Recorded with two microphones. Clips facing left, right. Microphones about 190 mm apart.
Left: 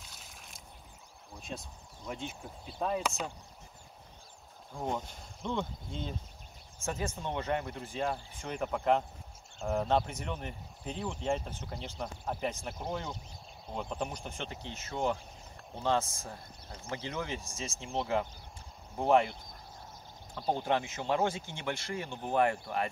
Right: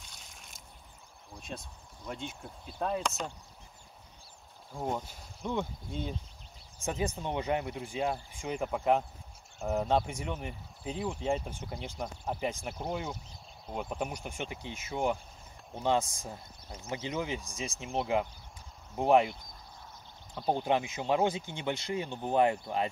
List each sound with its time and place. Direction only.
0.0 s slosh: centre (ahead or behind)
1.5 s speech: 5° left (ahead or behind)
4.7 s speech: 5° right (ahead or behind)
20.3 s speech: 15° right (ahead or behind)